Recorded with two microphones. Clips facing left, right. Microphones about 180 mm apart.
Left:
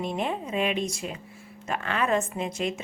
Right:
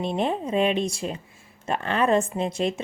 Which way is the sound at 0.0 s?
30° right (ahead or behind).